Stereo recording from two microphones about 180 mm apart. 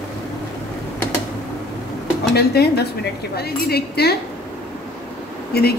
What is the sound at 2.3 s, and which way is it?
A woman's voice, 60° left (ahead or behind).